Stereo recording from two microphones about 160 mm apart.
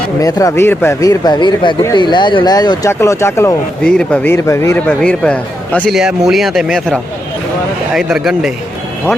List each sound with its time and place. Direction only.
0.2 s speech: 20° left (ahead or behind)
3.8 s a man's voice: 5° left (ahead or behind)
6.0 s speech: 5° right (ahead or behind)